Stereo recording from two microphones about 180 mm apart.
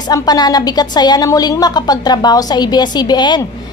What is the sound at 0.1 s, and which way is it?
A woman's voice, 20° left (ahead or behind).